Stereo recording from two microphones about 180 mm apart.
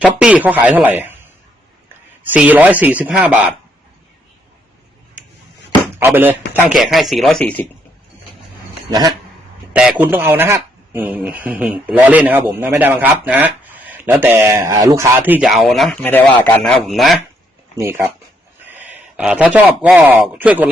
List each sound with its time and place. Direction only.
0.2 s speech: 5° right (ahead or behind)
2.3 s speech: 10° right (ahead or behind)
6.0 s speech: 10° right (ahead or behind)
6.9 s speech: centre (ahead or behind)
8.9 s speech: 20° right (ahead or behind)
9.7 s speech: 5° right (ahead or behind)
17.7 s speech: 15° right (ahead or behind)